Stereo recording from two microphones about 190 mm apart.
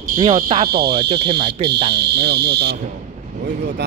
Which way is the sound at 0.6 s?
55° right (ahead or behind).